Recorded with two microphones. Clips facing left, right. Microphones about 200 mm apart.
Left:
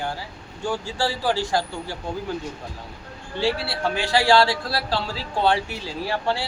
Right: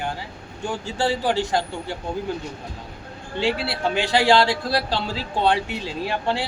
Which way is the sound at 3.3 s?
20° right (ahead or behind).